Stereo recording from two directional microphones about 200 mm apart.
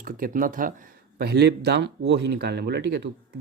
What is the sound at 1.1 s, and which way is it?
Speech, 55° right (ahead or behind).